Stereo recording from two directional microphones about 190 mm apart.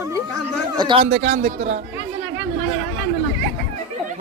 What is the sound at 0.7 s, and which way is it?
Speech, 25° right (ahead or behind).